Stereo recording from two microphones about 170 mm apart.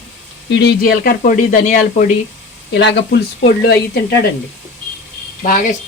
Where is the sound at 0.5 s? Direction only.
75° left (ahead or behind); by 2.0 s 50° left (ahead or behind).